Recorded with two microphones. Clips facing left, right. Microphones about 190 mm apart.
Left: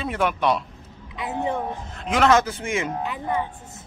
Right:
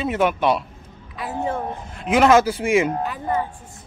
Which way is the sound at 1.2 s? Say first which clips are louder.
Right 1 dB; 20° left (ahead or behind).